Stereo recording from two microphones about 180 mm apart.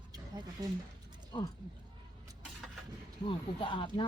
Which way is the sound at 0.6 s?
20° right (ahead or behind).